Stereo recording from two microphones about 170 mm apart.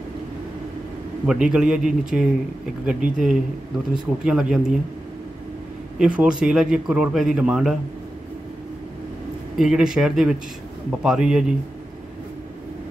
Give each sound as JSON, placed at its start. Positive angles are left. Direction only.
{"t": 1.2, "sound": "speech", "side_deg": -5}
{"t": 5.9, "sound": "speech", "side_deg": -5}
{"t": 9.6, "sound": "speech", "side_deg": -5}